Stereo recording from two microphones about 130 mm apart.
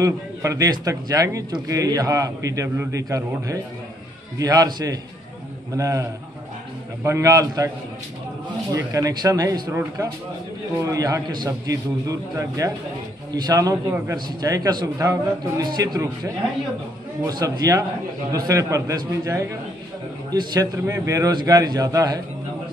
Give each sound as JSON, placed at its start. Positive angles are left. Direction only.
{"t": 0.0, "sound": "a man's voice", "side_deg": -25}
{"t": 8.7, "sound": "a man's voice", "side_deg": -25}